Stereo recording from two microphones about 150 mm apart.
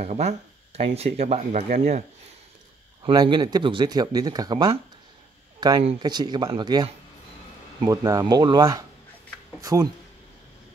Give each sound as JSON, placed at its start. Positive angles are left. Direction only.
{"t": 0.0, "sound": "speech", "side_deg": -50}
{"t": 3.0, "sound": "speech", "side_deg": -30}